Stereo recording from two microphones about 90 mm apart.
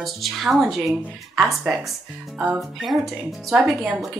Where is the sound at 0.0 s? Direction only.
Centre (ahead or behind).